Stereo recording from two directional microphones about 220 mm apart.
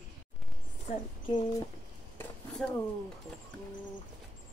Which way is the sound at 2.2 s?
5° left (ahead or behind).